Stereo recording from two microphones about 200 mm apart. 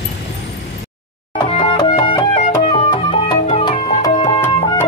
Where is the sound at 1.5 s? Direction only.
20° left (ahead or behind).